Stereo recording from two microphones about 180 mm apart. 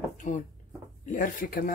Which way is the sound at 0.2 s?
45° left (ahead or behind).